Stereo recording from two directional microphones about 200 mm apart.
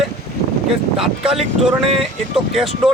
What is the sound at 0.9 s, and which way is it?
Speech, centre (ahead or behind).